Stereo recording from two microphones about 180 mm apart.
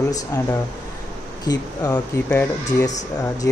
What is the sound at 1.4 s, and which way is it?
Speech, 20° left (ahead or behind).